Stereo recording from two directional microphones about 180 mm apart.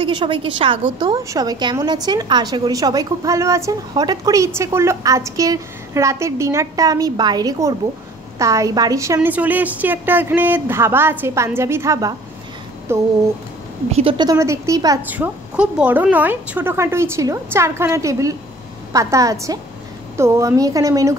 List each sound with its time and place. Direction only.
0.0 s a woman's voice: 25° right (ahead or behind)
13.9 s a woman's voice: 30° right (ahead or behind)
15.1 s a woman's voice: 10° right (ahead or behind)